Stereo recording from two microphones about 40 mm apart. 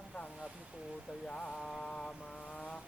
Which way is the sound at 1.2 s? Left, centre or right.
Left.